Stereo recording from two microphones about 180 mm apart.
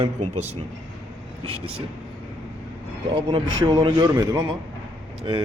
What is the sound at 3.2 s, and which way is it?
A man's voice, 25° right (ahead or behind).